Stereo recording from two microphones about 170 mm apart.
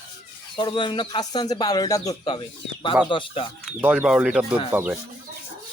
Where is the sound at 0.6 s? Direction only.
25° left (ahead or behind).